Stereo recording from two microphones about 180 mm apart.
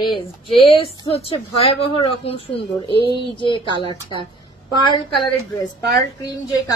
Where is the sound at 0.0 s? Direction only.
25° left (ahead or behind).